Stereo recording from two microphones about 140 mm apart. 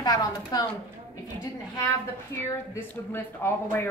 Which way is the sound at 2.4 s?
15° left (ahead or behind).